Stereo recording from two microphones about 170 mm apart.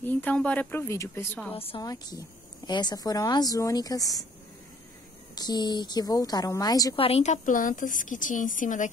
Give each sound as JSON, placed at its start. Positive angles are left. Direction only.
{"t": 0.0, "sound": "speech", "side_deg": 10}
{"t": 1.5, "sound": "a woman's voice", "side_deg": 35}
{"t": 1.8, "sound": "speech", "side_deg": 20}
{"t": 5.3, "sound": "speech", "side_deg": 25}
{"t": 7.0, "sound": "a woman's voice", "side_deg": 35}